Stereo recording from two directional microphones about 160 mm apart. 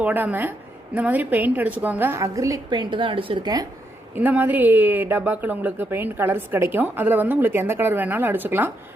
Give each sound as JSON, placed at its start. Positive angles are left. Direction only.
{"t": 0.0, "sound": "a woman's voice", "side_deg": -10}
{"t": 4.1, "sound": "speech", "side_deg": -10}